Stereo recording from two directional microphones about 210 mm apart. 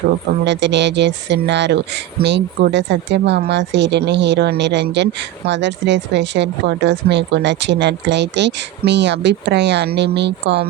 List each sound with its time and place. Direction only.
0.4 s speech: 55° right (ahead or behind)